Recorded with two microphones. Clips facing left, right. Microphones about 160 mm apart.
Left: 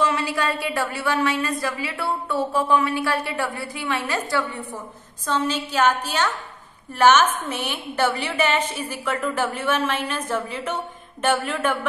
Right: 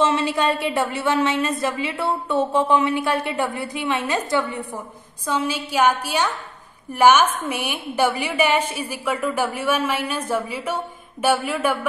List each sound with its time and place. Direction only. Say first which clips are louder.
0.0 s a woman's voice: right 3 dB; 25° right (ahead or behind); by 11.8 s 10° right (ahead or behind)